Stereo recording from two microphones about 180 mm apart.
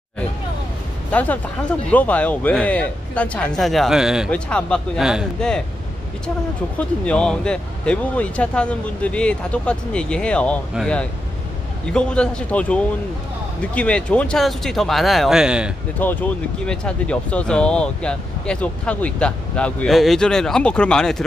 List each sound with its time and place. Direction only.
1.1 s speech: 10° left (ahead or behind)
7.1 s speech: 5° left (ahead or behind)
16.0 s speech: 10° left (ahead or behind)